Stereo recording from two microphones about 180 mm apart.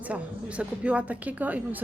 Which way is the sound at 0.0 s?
5° right (ahead or behind).